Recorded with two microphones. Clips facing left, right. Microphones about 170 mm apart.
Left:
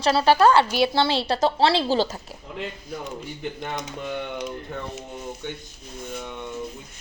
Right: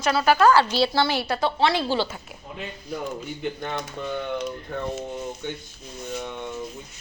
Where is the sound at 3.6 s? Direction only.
15° left (ahead or behind).